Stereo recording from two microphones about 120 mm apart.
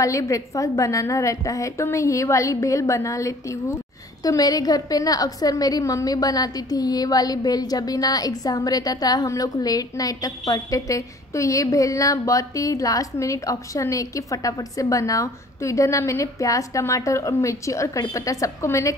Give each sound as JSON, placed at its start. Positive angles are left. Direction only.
{"t": 0.0, "sound": "a woman's voice", "side_deg": 25}